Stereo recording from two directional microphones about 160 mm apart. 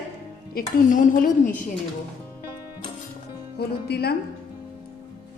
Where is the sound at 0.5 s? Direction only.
55° left (ahead or behind).